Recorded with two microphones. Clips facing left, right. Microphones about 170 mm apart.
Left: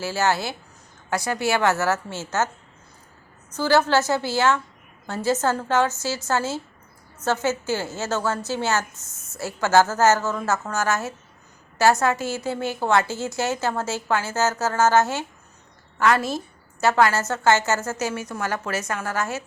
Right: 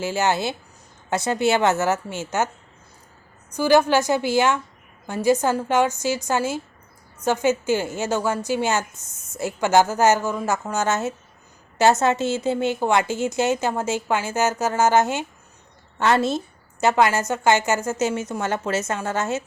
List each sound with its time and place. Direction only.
0.0 s a woman's voice: 20° right (ahead or behind)
3.5 s a woman's voice: 15° right (ahead or behind)